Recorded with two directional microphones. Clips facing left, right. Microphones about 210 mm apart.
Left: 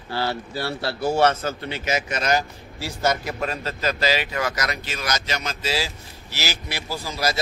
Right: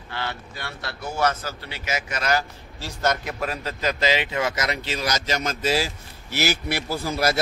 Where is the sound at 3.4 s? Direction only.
10° right (ahead or behind).